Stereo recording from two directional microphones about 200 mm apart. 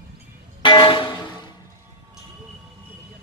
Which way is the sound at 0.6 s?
25° left (ahead or behind).